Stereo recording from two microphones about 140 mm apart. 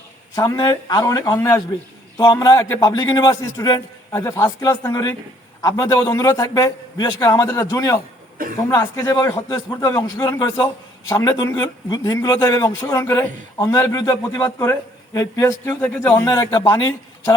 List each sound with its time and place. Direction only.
0.3 s a man's voice: 25° left (ahead or behind)